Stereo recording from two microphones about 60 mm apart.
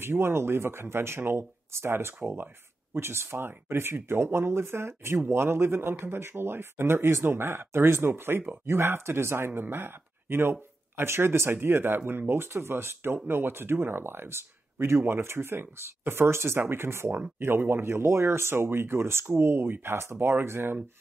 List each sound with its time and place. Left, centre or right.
0.0 s speech: right